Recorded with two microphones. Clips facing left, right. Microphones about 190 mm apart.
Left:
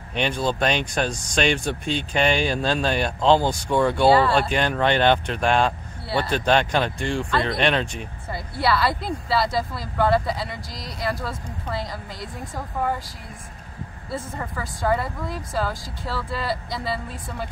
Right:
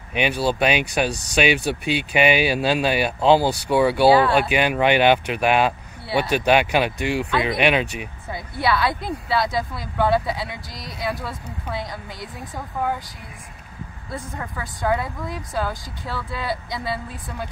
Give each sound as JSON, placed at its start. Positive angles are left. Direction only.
{"t": 0.1, "sound": "speech", "side_deg": -10}
{"t": 14.1, "sound": "speech", "side_deg": 0}